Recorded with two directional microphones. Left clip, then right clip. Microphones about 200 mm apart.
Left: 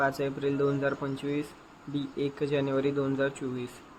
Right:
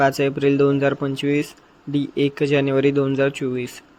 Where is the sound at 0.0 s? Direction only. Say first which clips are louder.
Right 11 dB; 40° right (ahead or behind).